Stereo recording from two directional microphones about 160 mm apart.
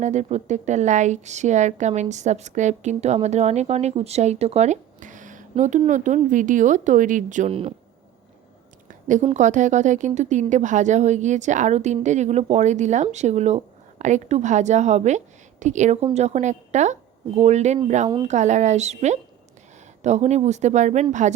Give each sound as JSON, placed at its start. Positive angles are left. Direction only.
{"t": 0.0, "sound": "a woman's voice", "side_deg": -45}
{"t": 8.9, "sound": "a sound", "side_deg": -50}
{"t": 9.2, "sound": "a woman's voice", "side_deg": -50}